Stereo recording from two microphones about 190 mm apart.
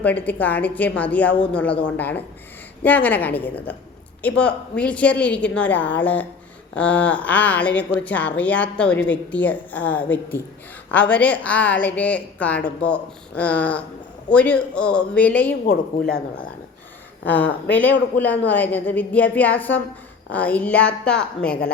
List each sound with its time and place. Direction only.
0.0 s speech: 10° left (ahead or behind)
15.6 s a woman's voice: 55° left (ahead or behind)
17.2 s speech: 10° left (ahead or behind)